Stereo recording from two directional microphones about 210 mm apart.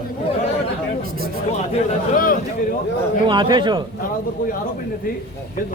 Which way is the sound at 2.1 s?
40° left (ahead or behind).